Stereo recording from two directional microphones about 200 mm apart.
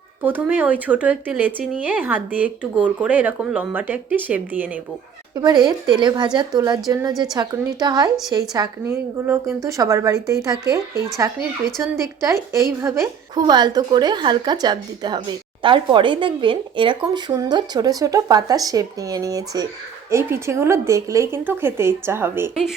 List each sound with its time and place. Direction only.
0.2 s speech: 10° right (ahead or behind)
5.4 s a woman's voice: 20° right (ahead or behind)